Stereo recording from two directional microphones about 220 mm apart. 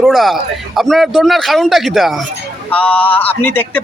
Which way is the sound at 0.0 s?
Centre (ahead or behind).